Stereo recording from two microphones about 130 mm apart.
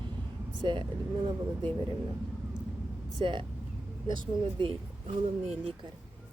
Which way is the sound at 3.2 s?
40° right (ahead or behind).